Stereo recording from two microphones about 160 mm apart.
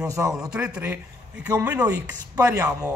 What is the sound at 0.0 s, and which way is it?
Speech, 20° right (ahead or behind).